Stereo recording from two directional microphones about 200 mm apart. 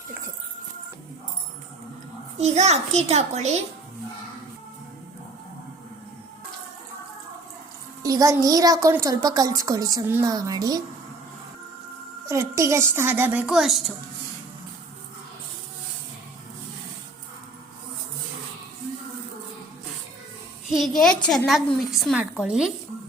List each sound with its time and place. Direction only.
2.4 s a child's voice: 35° right (ahead or behind)
8.0 s a woman's voice: 15° right (ahead or behind)
12.3 s a woman's voice: 15° right (ahead or behind)
20.7 s a woman's voice: centre (ahead or behind)